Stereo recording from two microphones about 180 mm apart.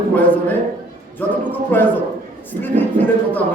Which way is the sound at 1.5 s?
10° left (ahead or behind).